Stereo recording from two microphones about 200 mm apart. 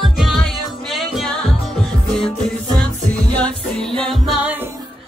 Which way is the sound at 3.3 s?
5° left (ahead or behind).